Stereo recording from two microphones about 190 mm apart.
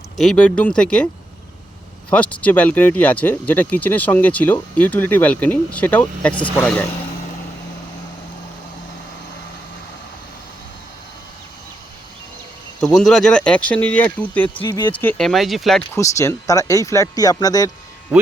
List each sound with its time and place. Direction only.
0.2 s speech: 5° left (ahead or behind)
2.0 s speech: 5° left (ahead or behind)
13.0 s speech: 5° left (ahead or behind)
15.2 s speech: centre (ahead or behind)
16.0 s speech: 15° left (ahead or behind)
18.1 s speech: centre (ahead or behind)